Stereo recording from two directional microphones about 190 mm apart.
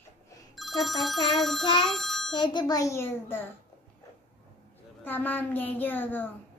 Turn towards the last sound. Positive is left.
turn(degrees=10)  # may be behind; listen again after turning